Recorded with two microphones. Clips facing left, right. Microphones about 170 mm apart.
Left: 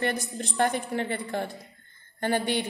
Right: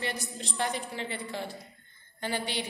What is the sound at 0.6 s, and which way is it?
A woman's voice, 55° left (ahead or behind).